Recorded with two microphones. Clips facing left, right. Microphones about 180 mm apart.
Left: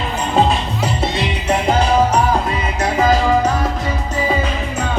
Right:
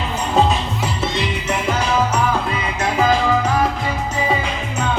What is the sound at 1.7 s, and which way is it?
Music, 35° left (ahead or behind).